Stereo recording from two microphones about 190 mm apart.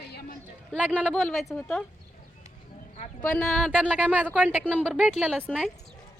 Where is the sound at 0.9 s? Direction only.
5° left (ahead or behind).